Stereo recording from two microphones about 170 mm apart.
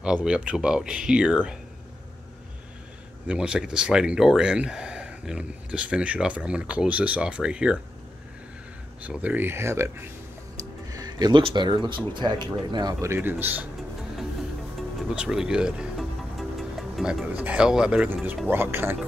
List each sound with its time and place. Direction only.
0.0 s speech: 5° right (ahead or behind)
3.3 s speech: 5° right (ahead or behind)
9.0 s speech: 10° right (ahead or behind)
10.6 s music: 20° right (ahead or behind)
12.1 s speech: 25° right (ahead or behind); by 13.7 s 10° right (ahead or behind)
14.8 s speech: 5° right (ahead or behind)